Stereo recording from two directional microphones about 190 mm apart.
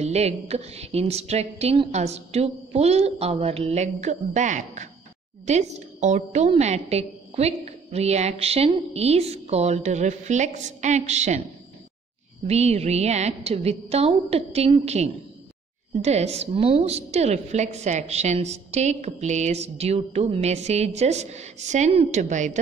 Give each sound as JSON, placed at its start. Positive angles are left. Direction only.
{"t": 0.0, "sound": "a woman's voice", "side_deg": -35}
{"t": 12.4, "sound": "a woman's voice", "side_deg": -35}